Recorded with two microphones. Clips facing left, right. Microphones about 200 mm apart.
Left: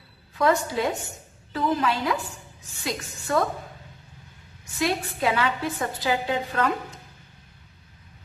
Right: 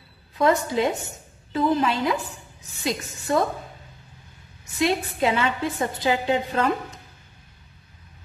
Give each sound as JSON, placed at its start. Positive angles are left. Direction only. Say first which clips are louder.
{"t": 0.4, "sound": "a woman's voice", "louder": "right 2 dB", "side_deg": -20}
{"t": 4.7, "sound": "a woman's voice", "louder": "right 3 dB", "side_deg": -25}